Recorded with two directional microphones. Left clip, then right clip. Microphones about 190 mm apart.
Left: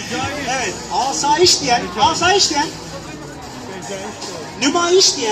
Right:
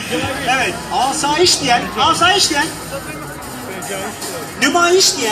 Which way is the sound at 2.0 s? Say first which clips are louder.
Right 1 dB; 25° right (ahead or behind).